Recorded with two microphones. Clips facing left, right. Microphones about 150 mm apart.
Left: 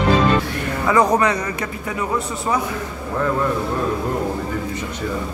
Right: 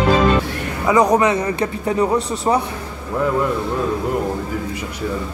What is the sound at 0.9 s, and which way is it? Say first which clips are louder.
A man's voice: right 2 dB; 20° right (ahead or behind).